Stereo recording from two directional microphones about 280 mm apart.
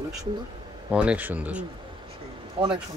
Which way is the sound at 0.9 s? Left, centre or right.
Centre.